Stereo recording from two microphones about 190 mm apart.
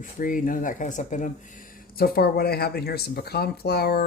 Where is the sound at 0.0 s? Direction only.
45° left (ahead or behind).